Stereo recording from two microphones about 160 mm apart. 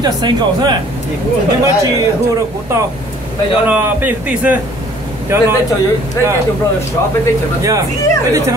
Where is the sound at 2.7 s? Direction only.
15° right (ahead or behind).